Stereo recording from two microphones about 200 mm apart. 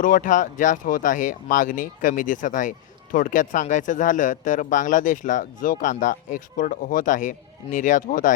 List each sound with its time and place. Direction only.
0.0 s speech: 40° left (ahead or behind)